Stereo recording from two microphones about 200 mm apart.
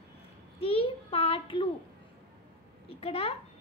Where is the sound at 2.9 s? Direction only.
30° left (ahead or behind).